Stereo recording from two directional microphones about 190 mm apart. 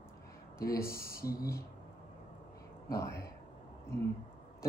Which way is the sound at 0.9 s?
50° left (ahead or behind).